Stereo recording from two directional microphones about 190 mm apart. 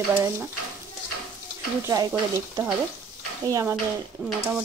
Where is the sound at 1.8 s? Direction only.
15° right (ahead or behind).